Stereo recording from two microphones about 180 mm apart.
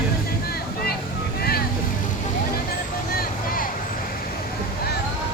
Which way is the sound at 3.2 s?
50° left (ahead or behind).